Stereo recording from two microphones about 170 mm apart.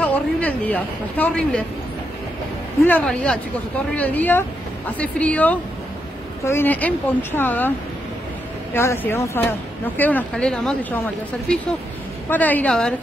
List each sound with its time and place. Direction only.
0.0 s speech: 10° left (ahead or behind)
2.8 s speech: 10° left (ahead or behind)
8.7 s speech: 15° left (ahead or behind)
12.3 s speech: 10° left (ahead or behind)